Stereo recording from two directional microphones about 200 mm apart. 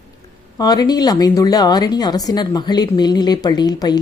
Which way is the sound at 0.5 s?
20° left (ahead or behind).